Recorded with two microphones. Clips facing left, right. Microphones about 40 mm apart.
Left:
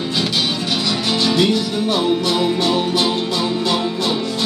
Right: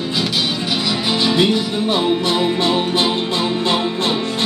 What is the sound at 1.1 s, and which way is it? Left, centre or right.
Music, centre.